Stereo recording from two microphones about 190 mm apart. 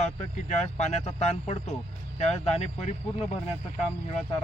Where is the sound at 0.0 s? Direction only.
35° left (ahead or behind).